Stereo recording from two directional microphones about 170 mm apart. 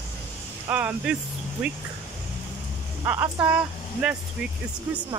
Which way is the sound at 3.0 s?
10° right (ahead or behind).